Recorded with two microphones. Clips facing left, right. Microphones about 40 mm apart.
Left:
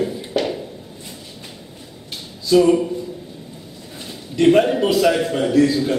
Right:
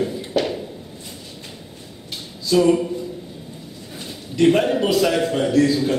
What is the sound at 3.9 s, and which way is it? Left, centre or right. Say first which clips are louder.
A man's voice: left 1 dB; centre.